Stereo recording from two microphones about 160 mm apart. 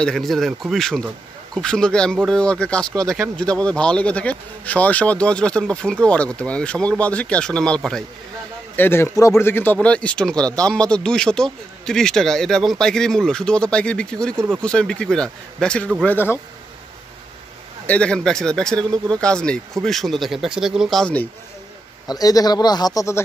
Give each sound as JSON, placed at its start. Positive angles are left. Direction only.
{"t": 0.0, "sound": "a man's voice", "side_deg": 0}
{"t": 2.9, "sound": "speech", "side_deg": -20}
{"t": 3.5, "sound": "a man's voice", "side_deg": 5}
{"t": 17.8, "sound": "a man's voice", "side_deg": 5}
{"t": 22.0, "sound": "speech", "side_deg": 25}